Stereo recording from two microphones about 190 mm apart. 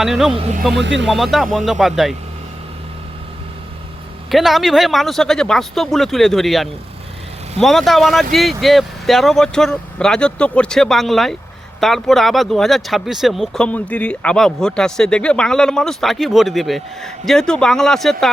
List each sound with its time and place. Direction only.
0.0 s speech: centre (ahead or behind)
0.3 s speech: 35° right (ahead or behind)
0.7 s speech: 70° right (ahead or behind)
1.0 s speech: centre (ahead or behind)
4.3 s speech: centre (ahead or behind)